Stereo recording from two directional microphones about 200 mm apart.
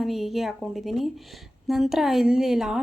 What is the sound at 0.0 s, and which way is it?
A woman's voice, centre (ahead or behind).